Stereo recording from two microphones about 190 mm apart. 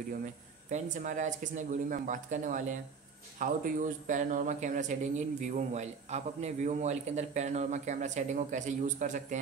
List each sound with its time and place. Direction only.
0.7 s speech: 40° right (ahead or behind)